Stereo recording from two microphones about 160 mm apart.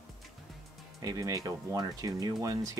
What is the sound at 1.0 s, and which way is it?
Speech, 20° right (ahead or behind).